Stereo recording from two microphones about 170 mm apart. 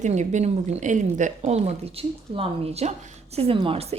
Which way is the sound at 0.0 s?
45° right (ahead or behind).